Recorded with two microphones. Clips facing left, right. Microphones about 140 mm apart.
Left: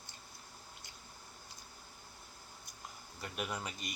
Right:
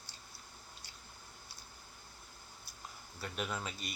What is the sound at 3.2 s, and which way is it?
Speech, 10° left (ahead or behind).